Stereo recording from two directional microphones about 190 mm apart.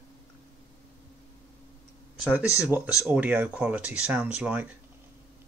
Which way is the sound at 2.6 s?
Centre (ahead or behind).